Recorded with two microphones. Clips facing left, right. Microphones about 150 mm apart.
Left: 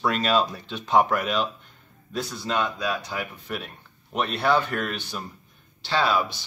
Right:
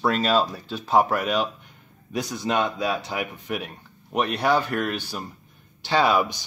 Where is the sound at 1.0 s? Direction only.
40° right (ahead or behind).